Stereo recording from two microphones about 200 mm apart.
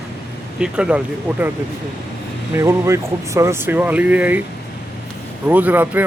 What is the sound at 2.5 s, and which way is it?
Speech, 15° right (ahead or behind).